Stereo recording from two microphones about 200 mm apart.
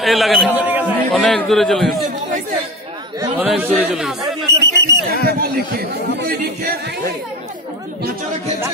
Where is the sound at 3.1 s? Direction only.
20° right (ahead or behind).